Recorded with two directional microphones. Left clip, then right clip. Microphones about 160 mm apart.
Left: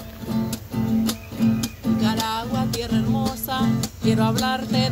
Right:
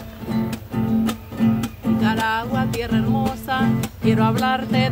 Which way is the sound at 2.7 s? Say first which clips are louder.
Right 2 dB; 40° right (ahead or behind).